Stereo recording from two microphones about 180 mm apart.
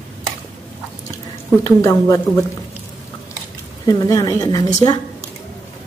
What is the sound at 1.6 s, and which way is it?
Speech, 20° left (ahead or behind).